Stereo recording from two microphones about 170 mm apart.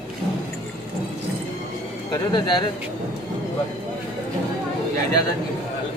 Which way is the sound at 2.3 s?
25° left (ahead or behind).